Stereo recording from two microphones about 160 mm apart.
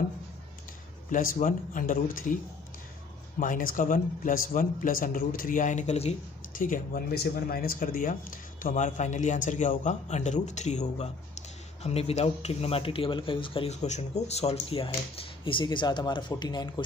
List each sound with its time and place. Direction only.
1.1 s speech: 55° left (ahead or behind)
3.3 s speech: 55° left (ahead or behind)
6.6 s speech: 60° left (ahead or behind); by 16.8 s 25° left (ahead or behind)